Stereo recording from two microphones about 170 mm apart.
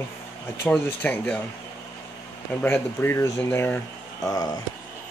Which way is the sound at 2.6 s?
10° left (ahead or behind).